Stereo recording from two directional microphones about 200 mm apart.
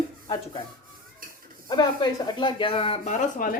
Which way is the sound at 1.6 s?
20° left (ahead or behind).